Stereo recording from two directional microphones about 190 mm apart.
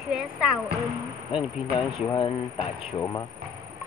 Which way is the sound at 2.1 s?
25° left (ahead or behind).